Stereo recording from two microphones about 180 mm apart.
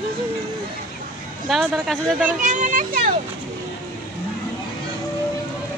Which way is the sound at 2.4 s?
45° right (ahead or behind).